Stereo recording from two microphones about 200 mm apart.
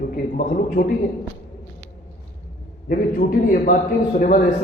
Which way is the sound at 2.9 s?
45° left (ahead or behind).